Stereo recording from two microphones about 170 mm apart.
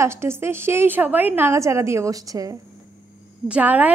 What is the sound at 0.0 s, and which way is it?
A woman's voice, 15° right (ahead or behind).